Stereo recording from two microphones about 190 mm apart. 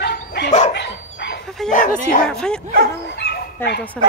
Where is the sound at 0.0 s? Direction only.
60° left (ahead or behind).